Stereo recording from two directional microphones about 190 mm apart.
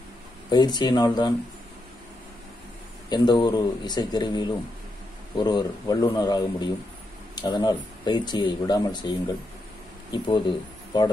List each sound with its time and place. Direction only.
0.5 s speech: 20° left (ahead or behind)
3.1 s speech: 20° left (ahead or behind)
10.1 s speech: 25° left (ahead or behind)